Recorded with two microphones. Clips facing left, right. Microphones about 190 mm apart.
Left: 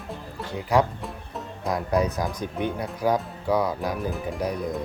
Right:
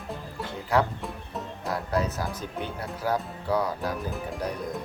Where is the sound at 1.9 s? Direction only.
15° left (ahead or behind).